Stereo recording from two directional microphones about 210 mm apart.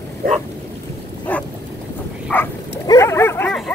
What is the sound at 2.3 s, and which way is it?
Bow-wow, 15° left (ahead or behind).